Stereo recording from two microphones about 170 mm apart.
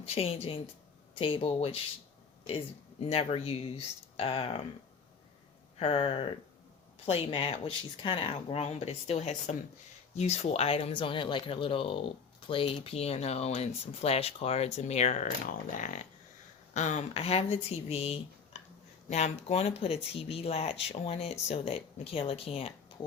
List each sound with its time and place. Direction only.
0.0 s speech: 35° left (ahead or behind)
5.8 s speech: 30° left (ahead or behind)